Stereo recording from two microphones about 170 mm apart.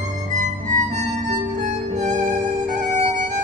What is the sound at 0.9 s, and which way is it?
Music, 45° right (ahead or behind).